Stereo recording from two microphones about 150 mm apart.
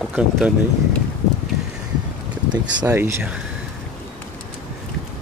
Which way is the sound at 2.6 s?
10° right (ahead or behind).